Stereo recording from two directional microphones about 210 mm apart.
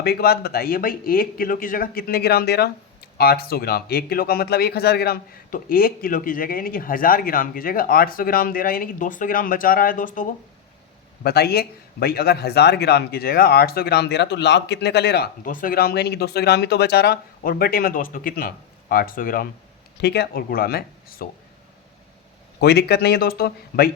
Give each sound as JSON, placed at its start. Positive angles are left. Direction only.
{"t": 0.0, "sound": "speech", "side_deg": 50}
{"t": 22.6, "sound": "speech", "side_deg": 50}